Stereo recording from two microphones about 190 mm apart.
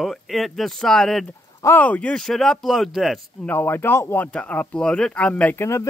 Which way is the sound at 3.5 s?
10° left (ahead or behind).